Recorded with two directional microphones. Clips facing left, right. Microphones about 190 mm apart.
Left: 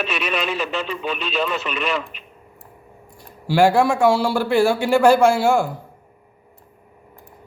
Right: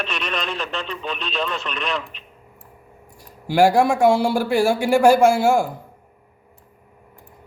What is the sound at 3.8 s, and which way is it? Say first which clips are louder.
Speech: right 1 dB; 50° right (ahead or behind).